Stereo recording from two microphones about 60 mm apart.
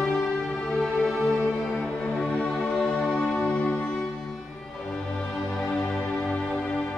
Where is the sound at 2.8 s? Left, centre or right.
Centre.